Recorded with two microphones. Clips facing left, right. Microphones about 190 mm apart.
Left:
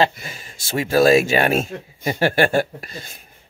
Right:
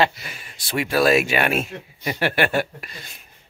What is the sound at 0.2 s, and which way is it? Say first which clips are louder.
Speech: left 3 dB; 50° left (ahead or behind).